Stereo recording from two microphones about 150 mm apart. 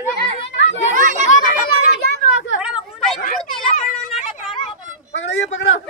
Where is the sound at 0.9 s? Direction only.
60° right (ahead or behind).